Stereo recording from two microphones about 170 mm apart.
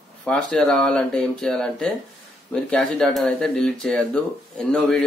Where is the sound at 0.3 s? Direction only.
5° left (ahead or behind).